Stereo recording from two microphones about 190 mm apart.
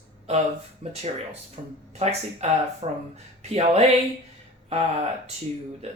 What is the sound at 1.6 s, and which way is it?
Speech, 30° right (ahead or behind).